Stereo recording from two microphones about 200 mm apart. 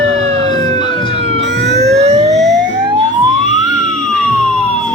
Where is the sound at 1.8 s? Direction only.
35° right (ahead or behind).